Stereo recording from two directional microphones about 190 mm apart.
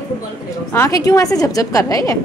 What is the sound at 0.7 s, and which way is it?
A woman's voice, 15° left (ahead or behind).